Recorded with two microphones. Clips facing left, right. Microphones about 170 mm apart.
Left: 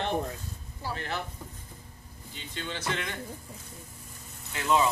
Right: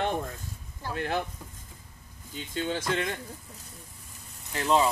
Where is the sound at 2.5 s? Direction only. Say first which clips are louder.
Right 7 dB; 45° right (ahead or behind).